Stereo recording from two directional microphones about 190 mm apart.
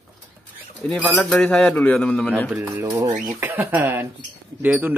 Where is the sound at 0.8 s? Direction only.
Centre (ahead or behind).